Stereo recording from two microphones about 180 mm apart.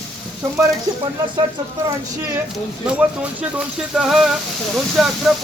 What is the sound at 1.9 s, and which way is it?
Speech, 20° right (ahead or behind).